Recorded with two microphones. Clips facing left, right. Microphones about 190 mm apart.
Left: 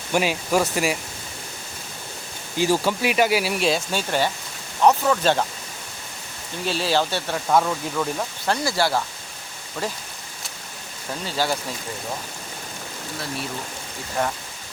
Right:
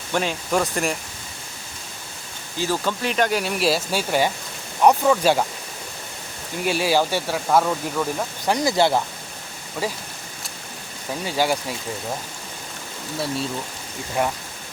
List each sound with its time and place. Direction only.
0.1 s speech: 10° left (ahead or behind)
2.6 s speech: 10° left (ahead or behind); by 5.5 s 10° right (ahead or behind)
6.7 s speech: 10° right (ahead or behind)
8.4 s speech: 20° right (ahead or behind)
11.3 s speech: 15° right (ahead or behind)
14.2 s speech: 10° right (ahead or behind)